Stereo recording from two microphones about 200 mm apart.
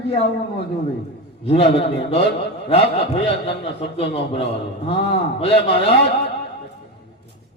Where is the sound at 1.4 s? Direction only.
30° left (ahead or behind).